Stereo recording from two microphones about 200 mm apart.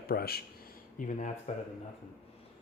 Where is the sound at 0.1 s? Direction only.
50° left (ahead or behind).